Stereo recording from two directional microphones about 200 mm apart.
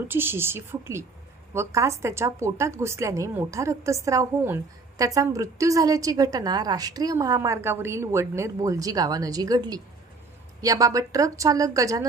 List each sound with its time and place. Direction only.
0.1 s a woman's voice: 10° right (ahead or behind)